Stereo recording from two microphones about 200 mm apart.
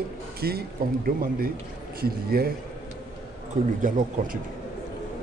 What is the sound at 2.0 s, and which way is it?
Speech, 50° right (ahead or behind).